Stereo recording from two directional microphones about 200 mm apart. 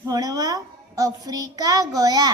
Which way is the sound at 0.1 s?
20° right (ahead or behind).